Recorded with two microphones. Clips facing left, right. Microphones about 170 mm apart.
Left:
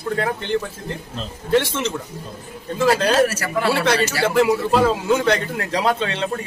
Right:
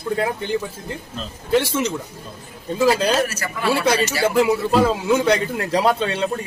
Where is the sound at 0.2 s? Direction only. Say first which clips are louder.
Left 1 dB; 10° right (ahead or behind).